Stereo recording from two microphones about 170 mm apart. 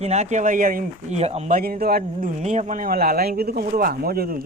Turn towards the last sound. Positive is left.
turn(degrees=-60)  # may be behind; listen again after turning